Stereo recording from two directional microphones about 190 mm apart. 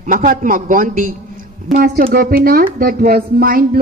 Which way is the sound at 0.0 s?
45° right (ahead or behind).